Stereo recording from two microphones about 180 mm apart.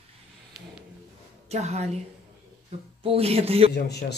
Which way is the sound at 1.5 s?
35° right (ahead or behind).